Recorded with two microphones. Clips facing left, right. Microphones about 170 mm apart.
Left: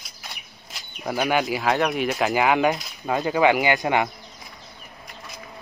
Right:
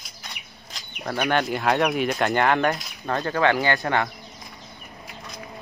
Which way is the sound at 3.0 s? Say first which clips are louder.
Left 3 dB; 15° left (ahead or behind).